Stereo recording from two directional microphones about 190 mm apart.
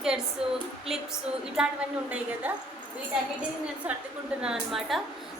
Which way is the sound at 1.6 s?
5° right (ahead or behind).